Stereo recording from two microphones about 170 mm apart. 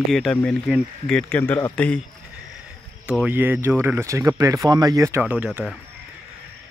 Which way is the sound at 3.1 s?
10° right (ahead or behind).